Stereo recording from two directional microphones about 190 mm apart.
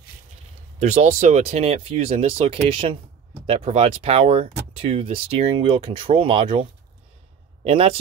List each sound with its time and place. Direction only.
0.7 s speech: 40° right (ahead or behind)